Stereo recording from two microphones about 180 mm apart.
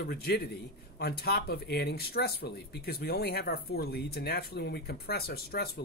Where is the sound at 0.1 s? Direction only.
60° left (ahead or behind).